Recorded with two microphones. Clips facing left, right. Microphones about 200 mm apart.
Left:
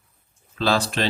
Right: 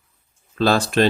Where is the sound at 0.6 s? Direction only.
50° right (ahead or behind).